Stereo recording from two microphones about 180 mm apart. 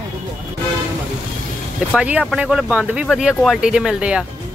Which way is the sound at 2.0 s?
5° right (ahead or behind).